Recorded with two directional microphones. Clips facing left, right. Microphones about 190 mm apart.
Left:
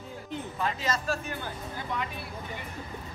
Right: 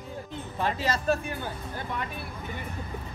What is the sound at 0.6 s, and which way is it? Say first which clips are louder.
Speech: right 3 dB; 30° right (ahead or behind).